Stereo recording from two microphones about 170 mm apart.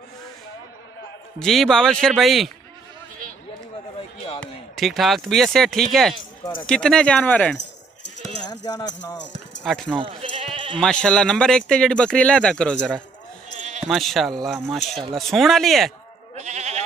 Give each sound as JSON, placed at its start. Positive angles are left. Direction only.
{"t": 1.4, "sound": "speech", "side_deg": 0}
{"t": 4.4, "sound": "speech", "side_deg": 0}
{"t": 8.5, "sound": "music", "side_deg": 25}
{"t": 9.6, "sound": "speech", "side_deg": 5}
{"t": 9.9, "sound": "sheep", "side_deg": -30}
{"t": 10.8, "sound": "speech", "side_deg": 5}
{"t": 13.8, "sound": "speech", "side_deg": 0}
{"t": 16.3, "sound": "goat", "side_deg": -40}